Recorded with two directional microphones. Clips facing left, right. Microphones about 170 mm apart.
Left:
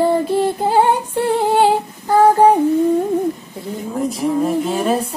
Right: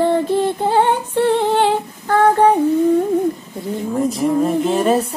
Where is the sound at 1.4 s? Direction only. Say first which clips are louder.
Left 2 dB; 10° left (ahead or behind).